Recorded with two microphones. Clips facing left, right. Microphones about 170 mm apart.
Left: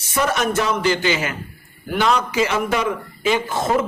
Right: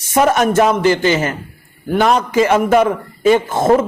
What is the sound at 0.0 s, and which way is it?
A man's voice, 50° right (ahead or behind).